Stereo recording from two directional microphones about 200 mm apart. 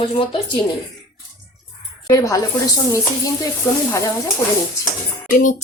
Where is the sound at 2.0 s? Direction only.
15° left (ahead or behind).